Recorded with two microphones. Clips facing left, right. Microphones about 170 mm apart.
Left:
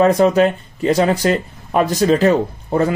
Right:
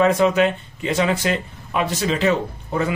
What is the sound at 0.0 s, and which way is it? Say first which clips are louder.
Speech: left 4 dB; 35° left (ahead or behind).